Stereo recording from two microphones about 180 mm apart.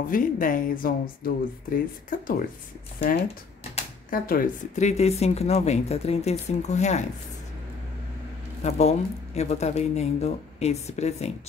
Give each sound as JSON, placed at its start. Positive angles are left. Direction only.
{"t": 0.0, "sound": "speech", "side_deg": 50}
{"t": 4.1, "sound": "speech", "side_deg": 50}
{"t": 4.8, "sound": "speech", "side_deg": 35}
{"t": 8.6, "sound": "speech", "side_deg": 40}